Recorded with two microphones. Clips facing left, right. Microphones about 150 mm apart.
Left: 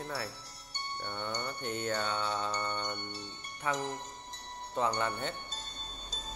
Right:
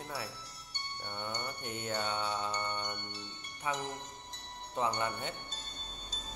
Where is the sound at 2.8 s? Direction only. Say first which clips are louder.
Left 3 dB; 40° left (ahead or behind).